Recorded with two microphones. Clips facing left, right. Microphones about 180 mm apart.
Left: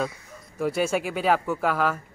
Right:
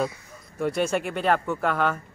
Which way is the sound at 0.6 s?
5° left (ahead or behind).